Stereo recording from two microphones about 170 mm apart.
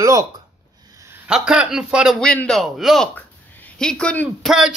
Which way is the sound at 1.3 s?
5° right (ahead or behind).